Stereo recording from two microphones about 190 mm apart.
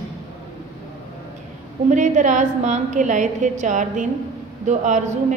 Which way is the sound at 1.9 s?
40° right (ahead or behind).